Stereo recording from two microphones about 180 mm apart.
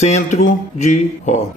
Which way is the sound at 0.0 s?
40° left (ahead or behind).